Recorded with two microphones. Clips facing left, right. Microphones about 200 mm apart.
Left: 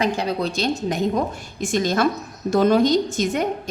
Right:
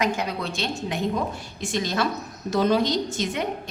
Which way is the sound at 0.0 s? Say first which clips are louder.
Left 4 dB; 35° left (ahead or behind).